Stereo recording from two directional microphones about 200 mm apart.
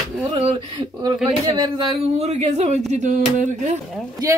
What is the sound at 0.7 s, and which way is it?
Speech, 20° right (ahead or behind).